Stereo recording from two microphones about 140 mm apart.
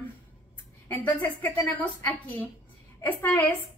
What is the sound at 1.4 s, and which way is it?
Speech, 10° left (ahead or behind).